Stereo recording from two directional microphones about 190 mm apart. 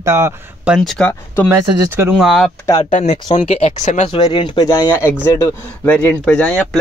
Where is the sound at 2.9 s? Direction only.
30° left (ahead or behind).